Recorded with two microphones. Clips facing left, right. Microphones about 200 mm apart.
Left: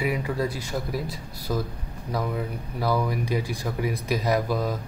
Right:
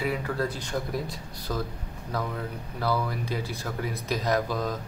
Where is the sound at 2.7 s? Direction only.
15° left (ahead or behind).